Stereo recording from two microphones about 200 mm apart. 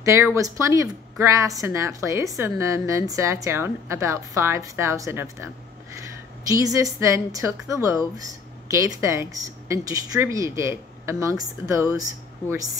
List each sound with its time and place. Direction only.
0.0 s speech: 15° right (ahead or behind)
6.5 s speech: 15° right (ahead or behind)